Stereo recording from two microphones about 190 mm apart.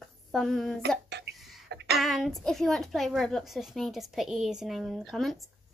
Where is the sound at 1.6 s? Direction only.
65° right (ahead or behind).